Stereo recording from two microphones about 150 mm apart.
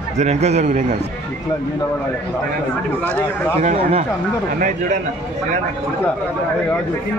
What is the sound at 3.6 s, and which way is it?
Speech, 40° right (ahead or behind).